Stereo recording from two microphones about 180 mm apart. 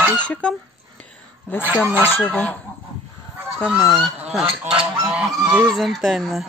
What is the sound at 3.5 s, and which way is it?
Speech, centre (ahead or behind).